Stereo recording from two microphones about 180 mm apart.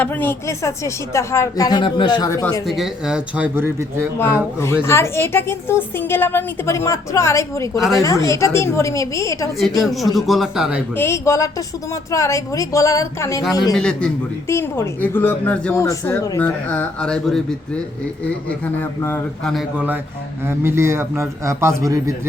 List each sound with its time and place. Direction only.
0.0 s a woman's voice: 10° left (ahead or behind)
2.6 s speech: centre (ahead or behind)
4.6 s a woman's voice: 15° left (ahead or behind)
9.8 s speech: centre (ahead or behind)
10.9 s a woman's voice: 15° left (ahead or behind)
13.7 s speech: 5° left (ahead or behind)
14.4 s a woman's voice: 15° left (ahead or behind)
18.4 s a woman's voice: 10° left (ahead or behind)
19.5 s a man's voice: 10° right (ahead or behind)